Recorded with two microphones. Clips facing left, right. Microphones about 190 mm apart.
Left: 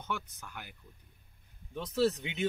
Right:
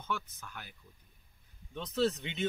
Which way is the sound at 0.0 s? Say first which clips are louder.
Even; 15° left (ahead or behind).